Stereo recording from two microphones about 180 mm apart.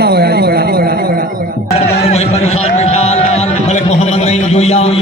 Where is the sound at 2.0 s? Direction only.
35° left (ahead or behind).